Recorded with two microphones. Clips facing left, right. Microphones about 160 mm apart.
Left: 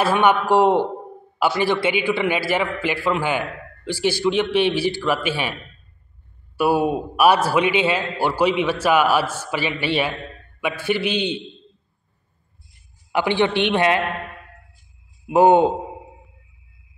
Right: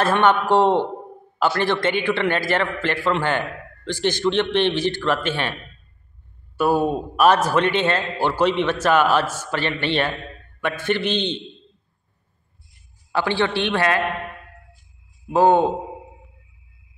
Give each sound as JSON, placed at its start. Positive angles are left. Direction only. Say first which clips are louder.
{"t": 0.0, "sound": "a man's voice", "louder": "even", "side_deg": 10}
{"t": 13.1, "sound": "a man's voice", "louder": "left 2 dB", "side_deg": 15}
{"t": 15.2, "sound": "a man's voice", "louder": "left 2 dB", "side_deg": 15}